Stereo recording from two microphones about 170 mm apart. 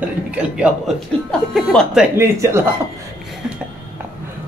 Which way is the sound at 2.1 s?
15° right (ahead or behind).